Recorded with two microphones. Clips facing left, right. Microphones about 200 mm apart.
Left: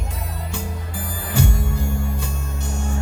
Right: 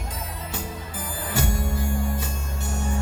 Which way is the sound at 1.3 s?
40° right (ahead or behind).